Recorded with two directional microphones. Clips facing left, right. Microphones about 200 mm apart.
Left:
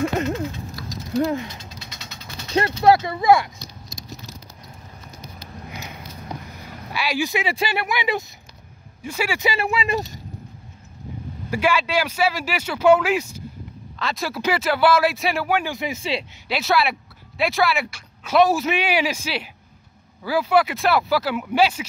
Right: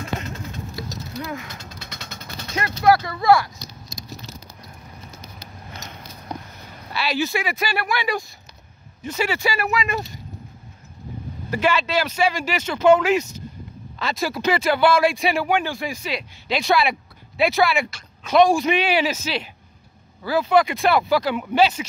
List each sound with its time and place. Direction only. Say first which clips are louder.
1.2 s speech: left 9 dB; 30° left (ahead or behind)
1.7 s vehicle: right 2 dB; 55° right (ahead or behind)
2.5 s speech: left 5 dB; 30° left (ahead or behind)
2.9 s speech: even; 20° left (ahead or behind)
6.9 s speech: even; 10° left (ahead or behind)
7.4 s speech: left 1 dB; 25° left (ahead or behind)
9.0 s speech: right 1 dB; 10° left (ahead or behind)
9.4 s speech: even; 25° left (ahead or behind)
11.5 s speech: even; 10° left (ahead or behind)
15.7 s speech: left 2 dB; 20° left (ahead or behind)
16.4 s speech: right 2 dB; 5° left (ahead or behind)